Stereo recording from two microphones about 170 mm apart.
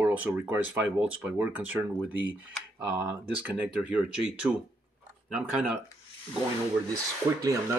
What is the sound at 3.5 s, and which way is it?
Speech, 5° right (ahead or behind).